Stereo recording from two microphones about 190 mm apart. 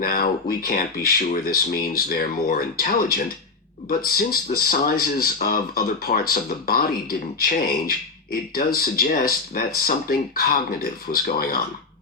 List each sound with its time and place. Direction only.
0.0 s speech: 50° left (ahead or behind)